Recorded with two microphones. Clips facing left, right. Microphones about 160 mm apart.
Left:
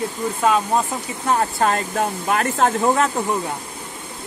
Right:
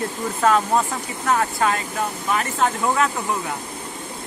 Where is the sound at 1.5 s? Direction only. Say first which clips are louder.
Left 2 dB; 45° left (ahead or behind).